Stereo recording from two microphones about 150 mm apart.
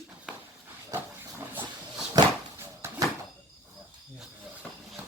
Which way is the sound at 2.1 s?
20° right (ahead or behind).